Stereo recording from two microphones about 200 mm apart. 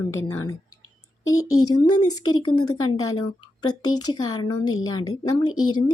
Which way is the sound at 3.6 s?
90° left.